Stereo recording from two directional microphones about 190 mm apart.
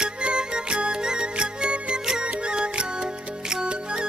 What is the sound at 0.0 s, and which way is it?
Music, 5° right (ahead or behind).